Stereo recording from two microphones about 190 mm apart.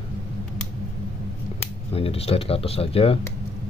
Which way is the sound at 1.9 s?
30° left (ahead or behind).